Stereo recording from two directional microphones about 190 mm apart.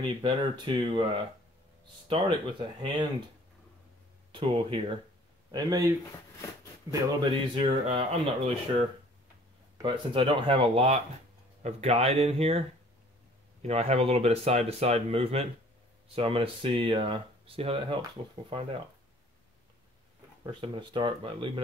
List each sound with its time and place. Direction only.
0.0 s speech: 25° right (ahead or behind)
2.0 s speech: 25° right (ahead or behind)
4.3 s speech: 25° right (ahead or behind)
6.9 s speech: 25° right (ahead or behind)
20.6 s speech: 25° right (ahead or behind)